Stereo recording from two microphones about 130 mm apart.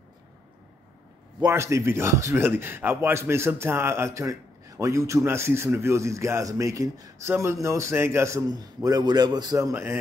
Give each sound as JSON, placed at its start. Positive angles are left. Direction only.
{"t": 1.4, "sound": "a man's voice", "side_deg": -20}